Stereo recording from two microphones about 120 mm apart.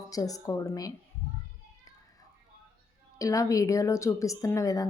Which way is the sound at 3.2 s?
30° left (ahead or behind).